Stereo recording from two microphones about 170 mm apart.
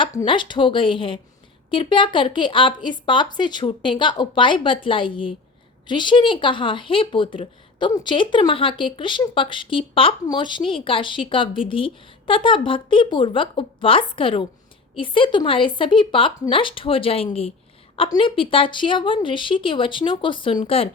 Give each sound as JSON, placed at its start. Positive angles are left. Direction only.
{"t": 0.3, "sound": "a woman's voice", "side_deg": 30}